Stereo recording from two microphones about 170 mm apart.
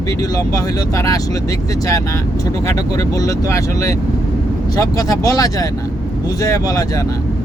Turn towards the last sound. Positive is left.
turn(degrees=20)  # may be behind; listen again after turning